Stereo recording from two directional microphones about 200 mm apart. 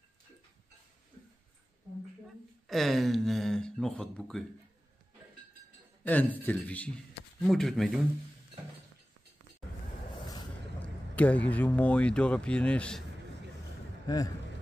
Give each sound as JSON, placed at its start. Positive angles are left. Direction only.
{"t": 2.7, "sound": "speech", "side_deg": 0}
{"t": 6.0, "sound": "speech", "side_deg": 10}
{"t": 11.1, "sound": "speech", "side_deg": 5}
{"t": 14.0, "sound": "speech", "side_deg": 20}